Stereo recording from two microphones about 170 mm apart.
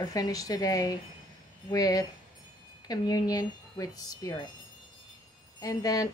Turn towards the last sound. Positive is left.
turn(degrees=20)  # may be behind; listen again after turning